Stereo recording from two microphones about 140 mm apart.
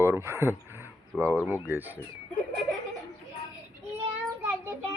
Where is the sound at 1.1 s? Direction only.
Centre (ahead or behind).